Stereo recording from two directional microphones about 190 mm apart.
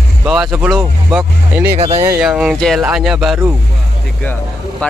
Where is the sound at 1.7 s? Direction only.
35° right (ahead or behind).